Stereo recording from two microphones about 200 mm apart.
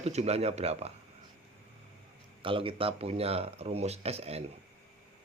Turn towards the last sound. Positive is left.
turn(degrees=-30)  # may be behind; listen again after turning